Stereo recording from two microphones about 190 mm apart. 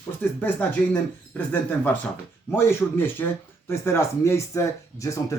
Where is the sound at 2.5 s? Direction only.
10° left (ahead or behind).